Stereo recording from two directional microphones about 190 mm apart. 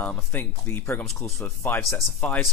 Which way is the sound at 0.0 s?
10° left (ahead or behind).